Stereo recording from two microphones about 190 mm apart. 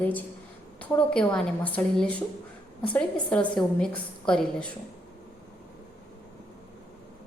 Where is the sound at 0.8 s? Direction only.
5° left (ahead or behind).